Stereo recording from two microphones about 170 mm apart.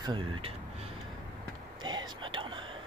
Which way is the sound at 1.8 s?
25° right (ahead or behind).